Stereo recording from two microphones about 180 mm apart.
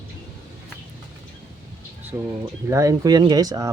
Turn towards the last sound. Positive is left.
turn(degrees=-20)  # may be behind; listen again after turning